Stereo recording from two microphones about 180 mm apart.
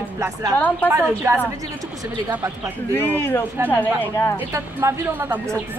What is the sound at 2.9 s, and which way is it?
Speech, 10° left (ahead or behind).